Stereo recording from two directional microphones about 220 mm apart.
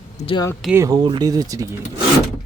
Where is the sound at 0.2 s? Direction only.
25° left (ahead or behind).